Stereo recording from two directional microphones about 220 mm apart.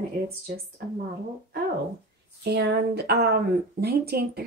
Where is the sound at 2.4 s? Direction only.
50° right (ahead or behind).